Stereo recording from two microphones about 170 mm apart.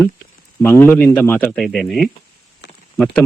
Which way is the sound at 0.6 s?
10° left (ahead or behind).